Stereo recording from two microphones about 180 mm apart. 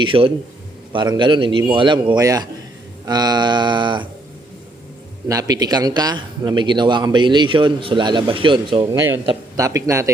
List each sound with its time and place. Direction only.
0.0 s a man's voice: 30° right (ahead or behind)
5.3 s a man's voice: 20° right (ahead or behind)